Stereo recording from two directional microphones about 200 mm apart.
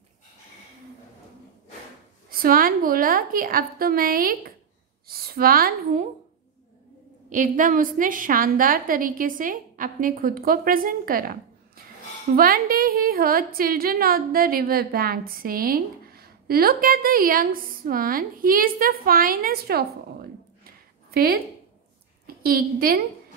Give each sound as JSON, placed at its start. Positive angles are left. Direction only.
{"t": 2.2, "sound": "a woman's voice", "side_deg": -45}
{"t": 7.2, "sound": "a woman's voice", "side_deg": -40}